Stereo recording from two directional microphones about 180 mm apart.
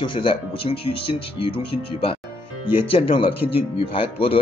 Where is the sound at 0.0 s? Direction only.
30° left (ahead or behind).